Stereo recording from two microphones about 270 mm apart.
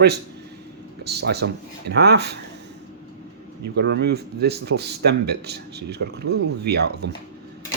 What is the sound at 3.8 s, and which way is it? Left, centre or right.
Speech, right.